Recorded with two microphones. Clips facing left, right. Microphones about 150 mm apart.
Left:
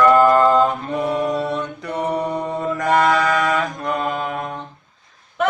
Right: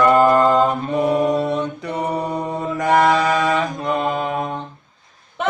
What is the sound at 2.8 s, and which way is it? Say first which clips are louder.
Mantra: right 2 dB; 20° right (ahead or behind).